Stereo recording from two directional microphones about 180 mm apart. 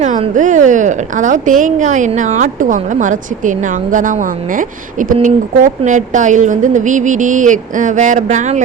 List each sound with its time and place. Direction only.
0.0 s a woman's voice: 45° right (ahead or behind)